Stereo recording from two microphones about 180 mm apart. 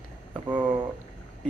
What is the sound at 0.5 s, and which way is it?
Speech, 25° right (ahead or behind).